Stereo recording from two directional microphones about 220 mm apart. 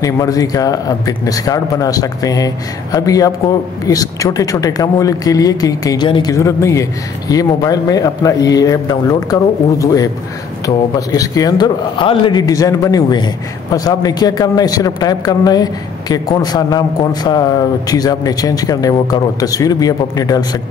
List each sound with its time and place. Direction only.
0.0 s speech: 15° left (ahead or behind)